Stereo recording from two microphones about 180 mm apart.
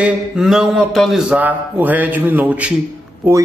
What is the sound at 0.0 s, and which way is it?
A man's voice, centre (ahead or behind).